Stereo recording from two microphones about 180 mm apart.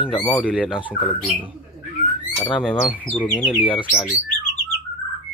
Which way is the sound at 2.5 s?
5° right (ahead or behind).